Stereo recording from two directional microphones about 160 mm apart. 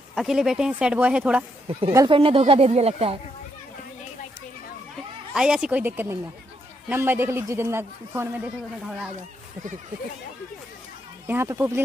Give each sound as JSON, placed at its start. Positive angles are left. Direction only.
{"t": 0.1, "sound": "speech", "side_deg": -5}
{"t": 2.0, "sound": "a woman's voice", "side_deg": -35}
{"t": 5.3, "sound": "a man's voice", "side_deg": -5}
{"t": 8.8, "sound": "speech", "side_deg": 0}
{"t": 11.2, "sound": "a man's voice", "side_deg": -15}